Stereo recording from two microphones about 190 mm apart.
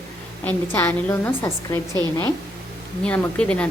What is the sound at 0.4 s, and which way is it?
A woman's voice, 10° left (ahead or behind).